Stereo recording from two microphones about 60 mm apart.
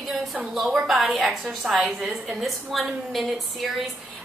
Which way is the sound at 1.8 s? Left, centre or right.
Centre.